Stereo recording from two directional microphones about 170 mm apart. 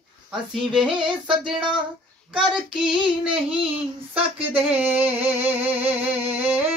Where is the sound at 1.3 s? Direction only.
30° right (ahead or behind).